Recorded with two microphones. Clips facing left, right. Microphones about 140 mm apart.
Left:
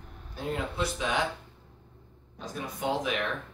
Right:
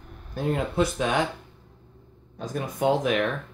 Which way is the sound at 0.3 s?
50° right (ahead or behind).